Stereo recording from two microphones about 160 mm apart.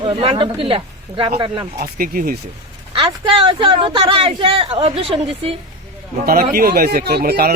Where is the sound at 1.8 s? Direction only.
60° right (ahead or behind).